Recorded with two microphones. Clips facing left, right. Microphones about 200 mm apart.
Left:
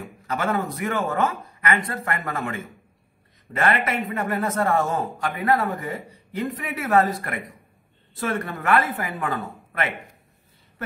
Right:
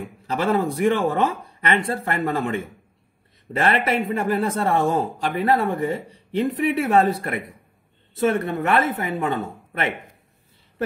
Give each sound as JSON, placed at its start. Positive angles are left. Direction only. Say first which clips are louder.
{"t": 0.3, "sound": "speech", "louder": "right 4 dB", "side_deg": -30}